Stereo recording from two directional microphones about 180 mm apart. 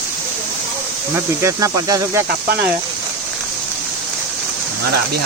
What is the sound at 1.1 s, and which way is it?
Speech, 15° right (ahead or behind).